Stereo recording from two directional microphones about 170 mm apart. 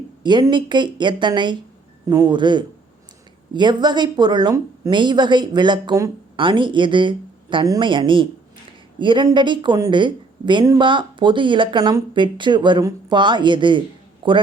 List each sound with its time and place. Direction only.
0.2 s a woman's voice: 25° right (ahead or behind)